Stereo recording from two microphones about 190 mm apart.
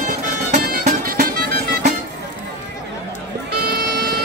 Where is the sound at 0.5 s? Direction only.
40° right (ahead or behind).